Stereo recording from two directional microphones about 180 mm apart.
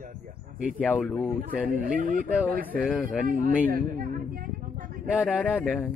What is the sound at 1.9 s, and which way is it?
Speech, 50° right (ahead or behind).